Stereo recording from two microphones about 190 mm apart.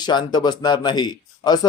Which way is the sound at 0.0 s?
20° left (ahead or behind).